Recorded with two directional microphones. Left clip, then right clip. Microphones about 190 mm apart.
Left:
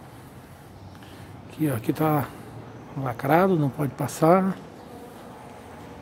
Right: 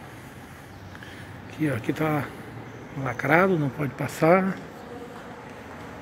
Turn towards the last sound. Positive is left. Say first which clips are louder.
# even
turn(degrees=20)  # may be behind; listen again after turning